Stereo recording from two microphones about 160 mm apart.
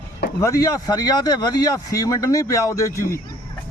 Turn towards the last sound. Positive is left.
turn(degrees=20)  # may be behind; listen again after turning